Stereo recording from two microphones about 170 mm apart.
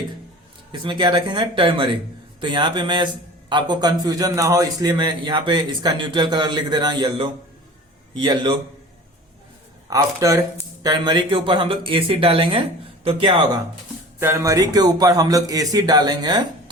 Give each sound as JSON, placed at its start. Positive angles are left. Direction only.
{"t": 0.7, "sound": "a man's voice", "side_deg": -25}
{"t": 9.9, "sound": "a man's voice", "side_deg": -20}
{"t": 14.2, "sound": "a man's voice", "side_deg": -15}